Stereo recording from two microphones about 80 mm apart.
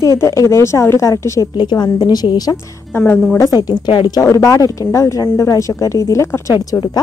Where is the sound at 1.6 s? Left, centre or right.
Left.